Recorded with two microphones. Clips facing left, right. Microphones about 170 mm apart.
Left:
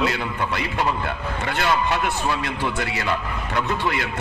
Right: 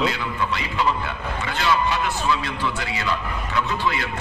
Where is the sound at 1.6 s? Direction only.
55° left (ahead or behind).